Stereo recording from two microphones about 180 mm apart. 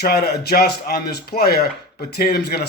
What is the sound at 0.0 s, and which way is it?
Speech, 60° left (ahead or behind).